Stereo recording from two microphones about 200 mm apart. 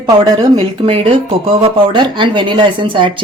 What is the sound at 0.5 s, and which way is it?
Speech, 30° right (ahead or behind).